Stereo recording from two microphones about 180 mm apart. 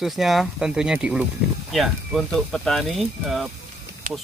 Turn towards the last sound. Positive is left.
turn(degrees=-45)  # may be behind; listen again after turning